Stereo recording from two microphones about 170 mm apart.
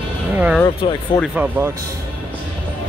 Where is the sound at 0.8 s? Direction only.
30° left (ahead or behind).